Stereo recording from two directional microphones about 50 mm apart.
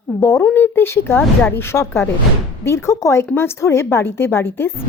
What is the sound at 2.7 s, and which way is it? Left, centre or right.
Speech, left.